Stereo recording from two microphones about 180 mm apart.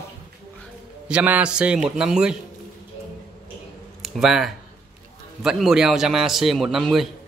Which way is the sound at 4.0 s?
Centre (ahead or behind).